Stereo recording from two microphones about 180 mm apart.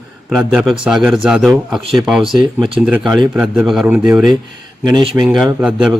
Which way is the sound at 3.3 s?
5° right (ahead or behind).